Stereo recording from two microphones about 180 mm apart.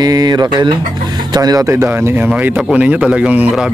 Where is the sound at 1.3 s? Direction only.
20° right (ahead or behind).